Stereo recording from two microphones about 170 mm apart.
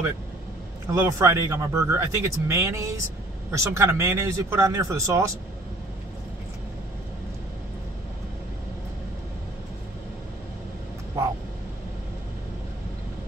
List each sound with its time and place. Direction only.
0.9 s speech: 15° right (ahead or behind)
11.2 s vehicle: 15° right (ahead or behind)